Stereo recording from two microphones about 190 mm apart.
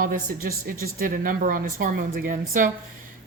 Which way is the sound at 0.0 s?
50° right (ahead or behind).